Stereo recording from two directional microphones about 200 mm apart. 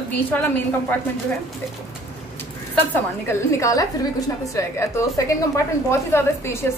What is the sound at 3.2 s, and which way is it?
A woman's voice, 15° left (ahead or behind).